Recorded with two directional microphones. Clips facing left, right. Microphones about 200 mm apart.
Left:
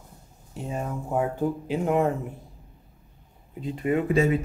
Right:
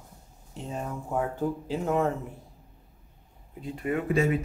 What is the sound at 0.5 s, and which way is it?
Speech, 10° left (ahead or behind).